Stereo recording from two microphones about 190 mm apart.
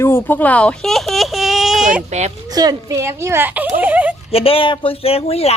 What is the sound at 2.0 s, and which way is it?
Speech, 35° right (ahead or behind).